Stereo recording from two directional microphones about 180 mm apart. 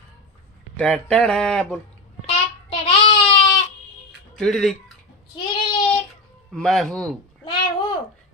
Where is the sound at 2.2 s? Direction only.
35° left (ahead or behind).